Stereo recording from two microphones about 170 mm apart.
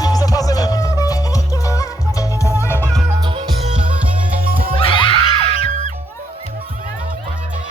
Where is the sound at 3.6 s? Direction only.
40° right (ahead or behind).